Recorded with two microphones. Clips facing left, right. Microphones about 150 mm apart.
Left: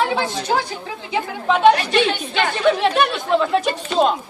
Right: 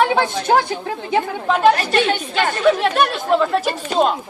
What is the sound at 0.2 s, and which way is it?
A woman's voice, 55° right (ahead or behind).